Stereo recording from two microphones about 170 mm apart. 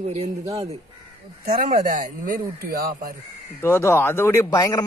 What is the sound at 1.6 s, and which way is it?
Speech, 50° right (ahead or behind).